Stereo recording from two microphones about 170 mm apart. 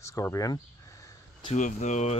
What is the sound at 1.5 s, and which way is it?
Speech, 45° left (ahead or behind).